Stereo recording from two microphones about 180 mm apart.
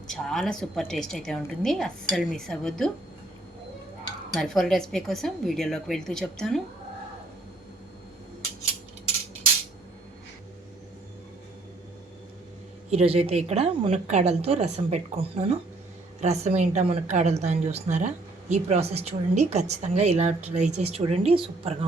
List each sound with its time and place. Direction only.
0.1 s a woman's voice: centre (ahead or behind)
4.4 s a woman's voice: 5° left (ahead or behind)
12.9 s a woman's voice: 35° right (ahead or behind)